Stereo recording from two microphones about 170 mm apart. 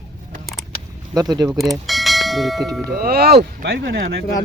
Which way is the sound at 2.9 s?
65° right (ahead or behind).